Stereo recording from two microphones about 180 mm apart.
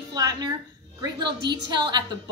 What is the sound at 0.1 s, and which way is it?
Music, 20° right (ahead or behind).